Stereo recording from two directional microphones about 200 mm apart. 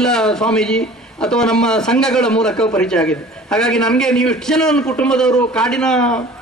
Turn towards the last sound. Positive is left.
turn(degrees=5)  # may be behind; listen again after turning